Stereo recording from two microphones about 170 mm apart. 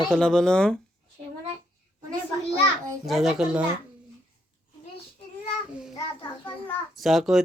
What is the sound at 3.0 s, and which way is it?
Speech, centre (ahead or behind).